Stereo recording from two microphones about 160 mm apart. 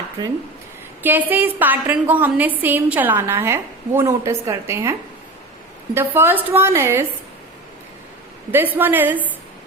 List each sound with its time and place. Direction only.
0.2 s speech: 25° right (ahead or behind)
1.0 s a woman's voice: 10° right (ahead or behind)
8.5 s a woman's voice: 10° right (ahead or behind)